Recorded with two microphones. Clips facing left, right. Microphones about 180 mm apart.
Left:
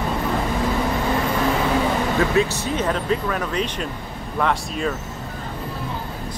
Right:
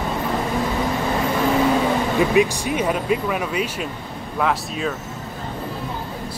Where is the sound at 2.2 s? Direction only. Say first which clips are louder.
Right 4 dB; 15° right (ahead or behind).